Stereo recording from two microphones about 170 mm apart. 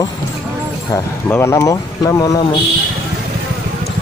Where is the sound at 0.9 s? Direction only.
15° left (ahead or behind).